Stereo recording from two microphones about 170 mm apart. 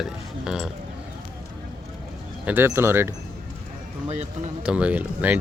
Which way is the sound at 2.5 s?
15° right (ahead or behind).